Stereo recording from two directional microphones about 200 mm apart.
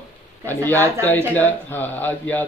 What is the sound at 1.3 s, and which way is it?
A man's voice, 10° left (ahead or behind).